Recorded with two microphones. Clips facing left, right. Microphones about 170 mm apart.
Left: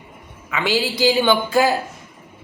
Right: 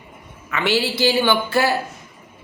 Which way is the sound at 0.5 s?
15° left (ahead or behind).